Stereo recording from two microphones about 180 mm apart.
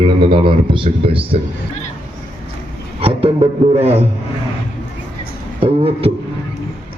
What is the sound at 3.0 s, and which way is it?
A man's voice, 30° right (ahead or behind).